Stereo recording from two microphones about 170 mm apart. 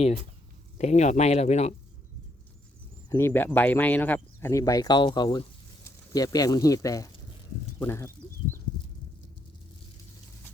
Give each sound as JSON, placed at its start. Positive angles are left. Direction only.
{"t": 0.8, "sound": "speech", "side_deg": 40}
{"t": 3.1, "sound": "speech", "side_deg": 15}
{"t": 7.8, "sound": "a sound", "side_deg": 15}